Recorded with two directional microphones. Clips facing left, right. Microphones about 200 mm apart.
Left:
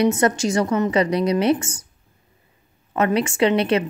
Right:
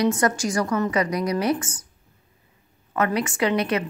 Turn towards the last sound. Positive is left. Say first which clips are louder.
# left 4 dB
turn(degrees=25)  # may be behind; listen again after turning